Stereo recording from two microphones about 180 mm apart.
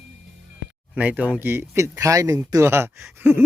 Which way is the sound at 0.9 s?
10° right (ahead or behind).